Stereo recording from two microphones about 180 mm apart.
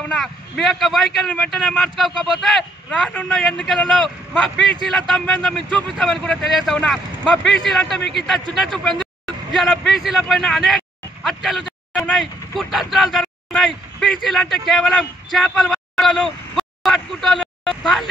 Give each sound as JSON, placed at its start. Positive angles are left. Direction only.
{"t": 0.1, "sound": "a man's voice", "side_deg": 0}